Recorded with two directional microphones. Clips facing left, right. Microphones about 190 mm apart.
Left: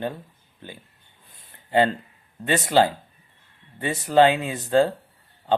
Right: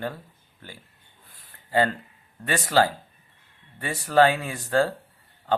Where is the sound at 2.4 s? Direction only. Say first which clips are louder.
Left 3 dB; 20° left (ahead or behind).